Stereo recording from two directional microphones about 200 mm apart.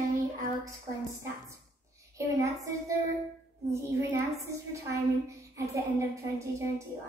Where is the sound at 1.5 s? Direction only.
15° right (ahead or behind).